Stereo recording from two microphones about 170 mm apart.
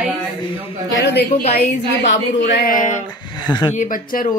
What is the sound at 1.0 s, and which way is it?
Speech, 80° left.